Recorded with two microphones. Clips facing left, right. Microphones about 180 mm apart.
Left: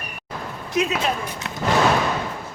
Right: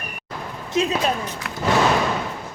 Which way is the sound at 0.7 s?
25° right (ahead or behind).